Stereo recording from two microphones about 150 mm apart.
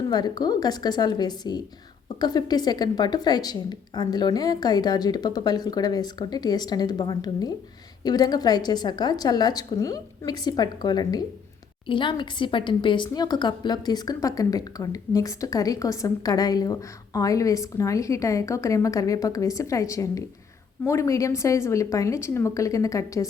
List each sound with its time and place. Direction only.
0.1 s a woman's voice: 25° left (ahead or behind)